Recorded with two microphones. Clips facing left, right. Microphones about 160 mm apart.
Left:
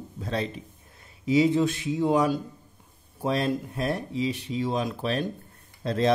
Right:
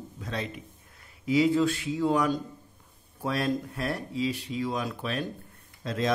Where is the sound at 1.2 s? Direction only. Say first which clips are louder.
Left 2 dB; 20° left (ahead or behind).